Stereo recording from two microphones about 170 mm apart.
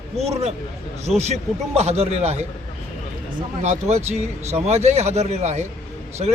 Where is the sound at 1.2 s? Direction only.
40° right (ahead or behind).